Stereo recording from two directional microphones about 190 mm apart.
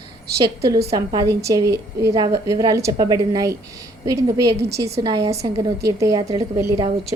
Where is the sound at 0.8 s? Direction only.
20° right (ahead or behind).